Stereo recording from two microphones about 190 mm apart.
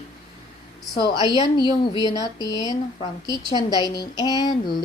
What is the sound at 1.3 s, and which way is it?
A woman's voice, 25° left (ahead or behind).